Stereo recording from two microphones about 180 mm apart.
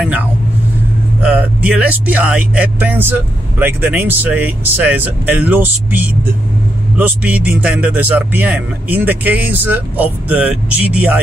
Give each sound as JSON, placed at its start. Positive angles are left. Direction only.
{"t": 1.2, "sound": "speech", "side_deg": -10}